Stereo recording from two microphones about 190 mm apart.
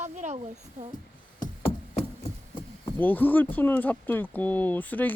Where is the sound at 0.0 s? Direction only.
35° right (ahead or behind).